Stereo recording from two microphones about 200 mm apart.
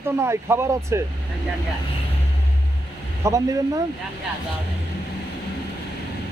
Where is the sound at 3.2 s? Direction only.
15° right (ahead or behind).